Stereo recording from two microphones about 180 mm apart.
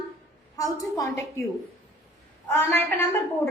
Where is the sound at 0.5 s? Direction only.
20° left (ahead or behind).